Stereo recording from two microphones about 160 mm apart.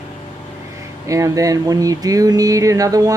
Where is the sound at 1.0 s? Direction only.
20° right (ahead or behind).